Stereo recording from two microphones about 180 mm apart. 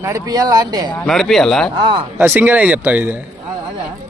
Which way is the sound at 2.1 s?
10° right (ahead or behind).